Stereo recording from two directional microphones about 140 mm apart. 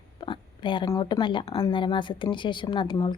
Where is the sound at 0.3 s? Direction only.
35° left (ahead or behind).